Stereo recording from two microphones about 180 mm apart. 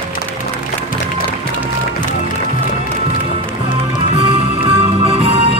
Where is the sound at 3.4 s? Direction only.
30° right (ahead or behind).